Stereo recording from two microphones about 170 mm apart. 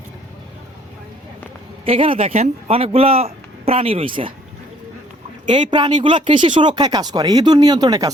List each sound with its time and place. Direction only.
1.8 s speech: 35° right (ahead or behind)
5.5 s speech: 25° right (ahead or behind)